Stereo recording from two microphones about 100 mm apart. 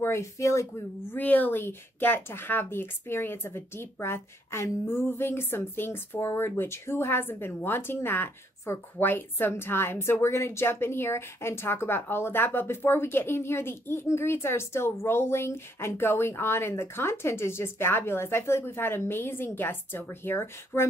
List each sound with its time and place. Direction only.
0.0 s speech: 30° left (ahead or behind)
1.1 s speech: 15° left (ahead or behind)